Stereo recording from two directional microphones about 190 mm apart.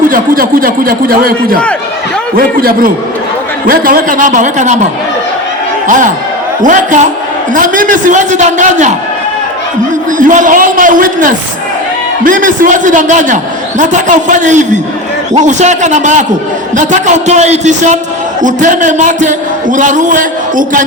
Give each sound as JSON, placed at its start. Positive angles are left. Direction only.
{"t": 0.1, "sound": "a man's voice", "side_deg": -50}
{"t": 6.6, "sound": "a man's voice", "side_deg": -40}
{"t": 10.1, "sound": "a man's voice", "side_deg": -45}